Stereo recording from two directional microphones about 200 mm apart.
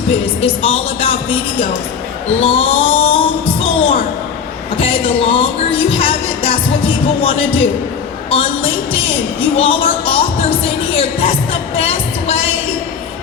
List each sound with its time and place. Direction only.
0.4 s music: 30° left (ahead or behind)